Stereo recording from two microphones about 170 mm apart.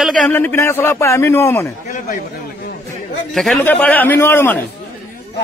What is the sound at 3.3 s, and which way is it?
A man's voice, 5° left (ahead or behind).